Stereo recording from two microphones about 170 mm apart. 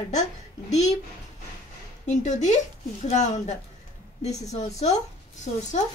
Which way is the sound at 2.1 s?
45° left (ahead or behind).